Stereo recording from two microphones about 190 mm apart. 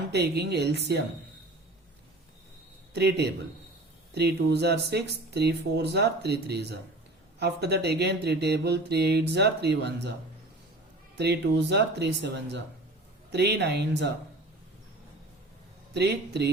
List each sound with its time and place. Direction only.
0.1 s speech: 60° right (ahead or behind)
2.9 s speech: 60° right (ahead or behind)
11.2 s speech: 65° right (ahead or behind)
15.9 s speech: 65° right (ahead or behind)